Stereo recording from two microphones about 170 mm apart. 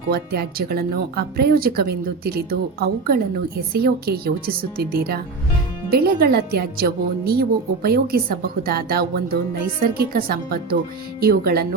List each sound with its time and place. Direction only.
0.1 s speech: 65° right (ahead or behind)